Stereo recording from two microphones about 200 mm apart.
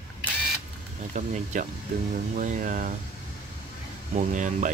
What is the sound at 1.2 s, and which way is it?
Speech, 40° right (ahead or behind).